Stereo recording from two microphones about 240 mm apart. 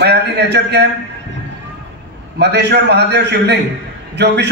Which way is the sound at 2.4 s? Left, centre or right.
Right.